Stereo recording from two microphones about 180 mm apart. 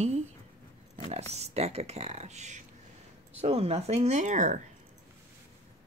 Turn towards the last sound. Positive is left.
turn(degrees=-40)  # may be behind; listen again after turning